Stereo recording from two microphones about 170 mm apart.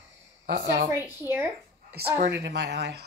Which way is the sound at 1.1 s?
15° right (ahead or behind).